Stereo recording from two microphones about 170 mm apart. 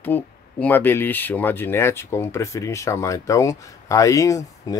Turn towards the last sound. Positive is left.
turn(degrees=20)  # may be behind; listen again after turning